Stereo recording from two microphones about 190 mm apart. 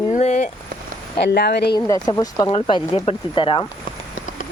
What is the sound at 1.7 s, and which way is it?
Speech, 20° left (ahead or behind).